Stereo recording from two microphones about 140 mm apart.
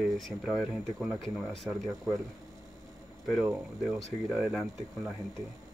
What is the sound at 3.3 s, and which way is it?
Speech, 5° right (ahead or behind).